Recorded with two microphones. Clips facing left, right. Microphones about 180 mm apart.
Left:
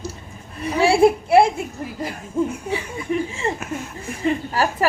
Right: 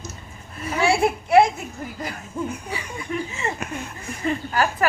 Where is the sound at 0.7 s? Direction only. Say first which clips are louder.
Left 5 dB; 30° left (ahead or behind).